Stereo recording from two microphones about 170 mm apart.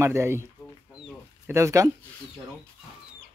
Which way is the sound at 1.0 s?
15° right (ahead or behind).